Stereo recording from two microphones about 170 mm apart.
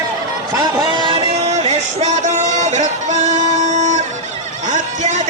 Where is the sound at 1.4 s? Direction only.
40° right (ahead or behind).